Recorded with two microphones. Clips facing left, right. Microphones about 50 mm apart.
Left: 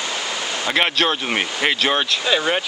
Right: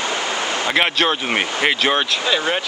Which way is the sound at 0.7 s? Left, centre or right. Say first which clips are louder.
Even; centre.